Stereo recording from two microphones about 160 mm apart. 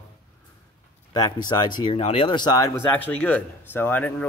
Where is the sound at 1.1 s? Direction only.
25° left (ahead or behind).